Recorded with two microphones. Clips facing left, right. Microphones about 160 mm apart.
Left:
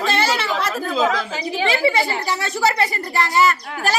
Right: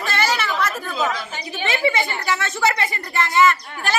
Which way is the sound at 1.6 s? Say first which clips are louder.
Left 2 dB; 35° left (ahead or behind).